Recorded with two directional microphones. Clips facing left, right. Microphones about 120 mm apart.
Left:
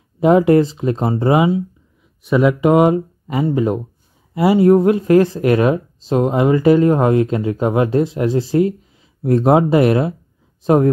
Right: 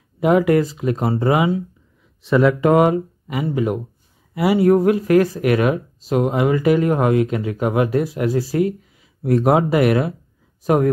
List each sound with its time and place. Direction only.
0.2 s speech: 30° left (ahead or behind)